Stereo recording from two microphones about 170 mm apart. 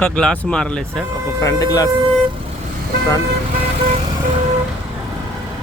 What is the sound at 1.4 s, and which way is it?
Speech, 20° left (ahead or behind).